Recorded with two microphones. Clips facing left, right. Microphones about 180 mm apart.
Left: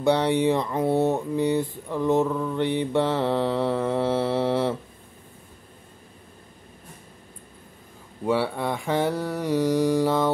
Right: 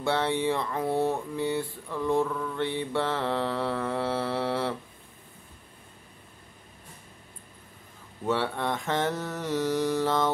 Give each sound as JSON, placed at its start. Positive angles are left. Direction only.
{"t": 0.0, "sound": "speech", "side_deg": 15}
{"t": 8.3, "sound": "mantra", "side_deg": 10}